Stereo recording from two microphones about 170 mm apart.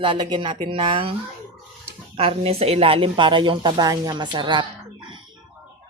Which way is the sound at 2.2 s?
35° right (ahead or behind).